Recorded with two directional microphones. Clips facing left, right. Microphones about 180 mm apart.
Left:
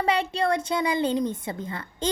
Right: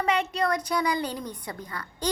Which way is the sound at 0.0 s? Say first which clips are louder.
Left 1 dB; 30° left (ahead or behind).